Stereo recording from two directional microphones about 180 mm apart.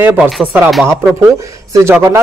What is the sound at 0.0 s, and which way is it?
Speech, 10° right (ahead or behind).